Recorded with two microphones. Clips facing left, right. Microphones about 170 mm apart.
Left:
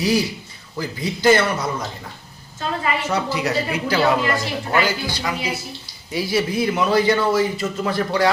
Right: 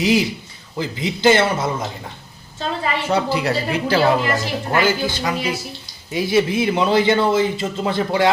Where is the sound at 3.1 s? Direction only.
30° right (ahead or behind).